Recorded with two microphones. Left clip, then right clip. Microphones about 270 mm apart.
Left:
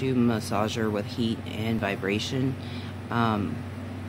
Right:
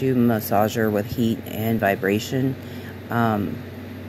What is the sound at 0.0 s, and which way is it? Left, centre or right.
A man's voice, centre.